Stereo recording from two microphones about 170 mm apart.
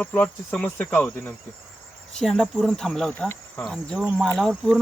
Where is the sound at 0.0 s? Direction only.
10° left (ahead or behind).